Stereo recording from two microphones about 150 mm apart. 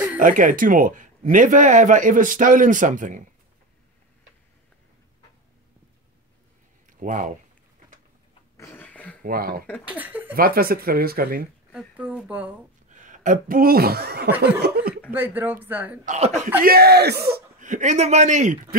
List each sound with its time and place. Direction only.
0.2 s a man's voice: 60° right (ahead or behind)
6.9 s speech: 60° right (ahead or behind)
8.5 s a sound: 15° left (ahead or behind)
9.2 s speech: 80° right
9.8 s speech: 10° right (ahead or behind)
10.3 s speech: 80° right
11.7 s speech: 5° right (ahead or behind)
12.9 s speech: 60° right (ahead or behind); by 15.0 s 90° right
15.1 s speech: 15° right (ahead or behind)
16.1 s speech: 50° right (ahead or behind)
16.6 s a man's voice: 90° right; by 18.8 s 55° right (ahead or behind)